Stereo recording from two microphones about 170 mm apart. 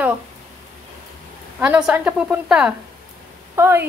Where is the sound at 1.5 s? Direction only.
5° right (ahead or behind).